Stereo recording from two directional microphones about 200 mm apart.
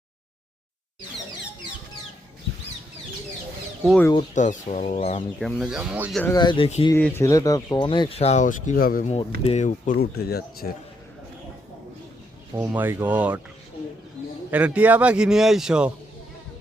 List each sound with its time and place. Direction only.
3.8 s a man's voice: 5° left (ahead or behind)
4.4 s speech: 40° left (ahead or behind)
5.4 s a man's voice: centre (ahead or behind)
6.2 s speech: 20° left (ahead or behind)
7.0 s speech: 10° left (ahead or behind); by 9.1 s 45° left (ahead or behind)
9.4 s speech: 35° left (ahead or behind); by 10.7 s 50° left (ahead or behind)
12.6 s speech: 10° right (ahead or behind)
14.5 s a man's voice: 5° right (ahead or behind)